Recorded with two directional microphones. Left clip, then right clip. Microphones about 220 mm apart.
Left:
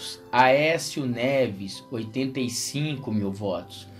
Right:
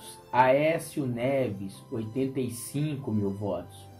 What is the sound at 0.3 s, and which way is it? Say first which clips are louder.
Speech: left 3 dB; 45° left (ahead or behind).